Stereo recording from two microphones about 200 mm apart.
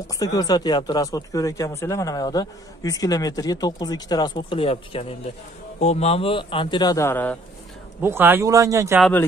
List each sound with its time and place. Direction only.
0.1 s speech: 15° left (ahead or behind)
8.0 s speech: 10° right (ahead or behind)